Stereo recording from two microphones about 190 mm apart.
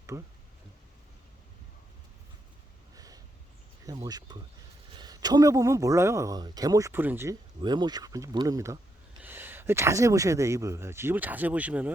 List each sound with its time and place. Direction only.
0.1 s speech: 15° right (ahead or behind)
2.9 s a sound: 20° right (ahead or behind)
3.8 s speech: 20° right (ahead or behind)
7.6 s speech: 20° right (ahead or behind)